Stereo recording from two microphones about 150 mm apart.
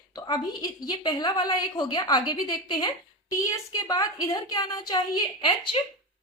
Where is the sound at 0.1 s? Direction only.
30° left (ahead or behind).